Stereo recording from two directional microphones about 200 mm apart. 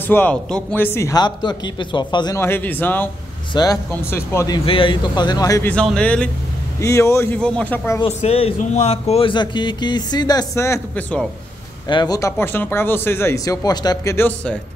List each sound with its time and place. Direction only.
0.0 s a man's voice: 10° left (ahead or behind)
4.6 s a man's voice: 25° left (ahead or behind); by 8.0 s 10° left (ahead or behind)
8.0 s speech: 30° left (ahead or behind); by 11.2 s 10° left (ahead or behind)
11.9 s a man's voice: 20° left (ahead or behind)